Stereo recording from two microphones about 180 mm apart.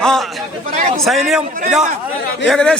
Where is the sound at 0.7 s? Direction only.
40° right (ahead or behind).